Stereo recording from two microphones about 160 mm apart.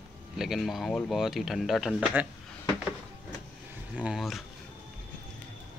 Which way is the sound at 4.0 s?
5° right (ahead or behind).